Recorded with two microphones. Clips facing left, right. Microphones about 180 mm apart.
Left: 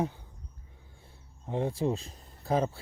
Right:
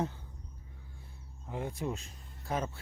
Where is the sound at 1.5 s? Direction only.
30° left (ahead or behind).